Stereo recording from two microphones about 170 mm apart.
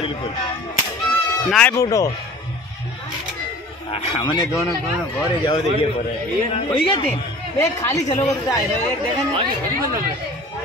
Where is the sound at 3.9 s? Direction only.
30° left (ahead or behind).